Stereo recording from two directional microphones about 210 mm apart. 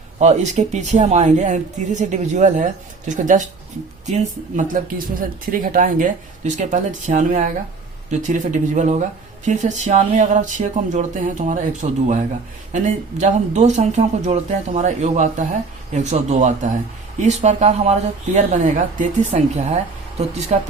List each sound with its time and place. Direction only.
0.2 s speech: 35° right (ahead or behind)